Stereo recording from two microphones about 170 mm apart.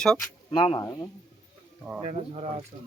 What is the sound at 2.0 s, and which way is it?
Speech, 35° right (ahead or behind).